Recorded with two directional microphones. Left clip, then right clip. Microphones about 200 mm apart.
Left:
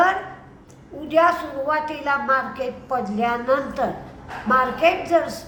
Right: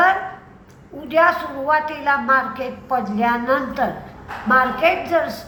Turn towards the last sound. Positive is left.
turn(degrees=15)  # may be behind; listen again after turning